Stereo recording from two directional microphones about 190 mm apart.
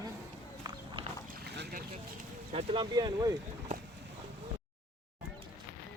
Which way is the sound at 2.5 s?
30° right (ahead or behind).